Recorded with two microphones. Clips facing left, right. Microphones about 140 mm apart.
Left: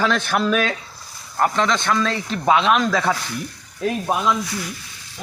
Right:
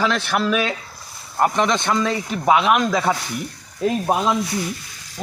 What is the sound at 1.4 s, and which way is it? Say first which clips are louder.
Speech: right 1 dB; 20° right (ahead or behind).